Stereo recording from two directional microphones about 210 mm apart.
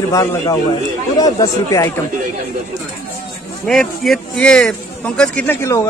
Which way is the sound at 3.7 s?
Centre (ahead or behind).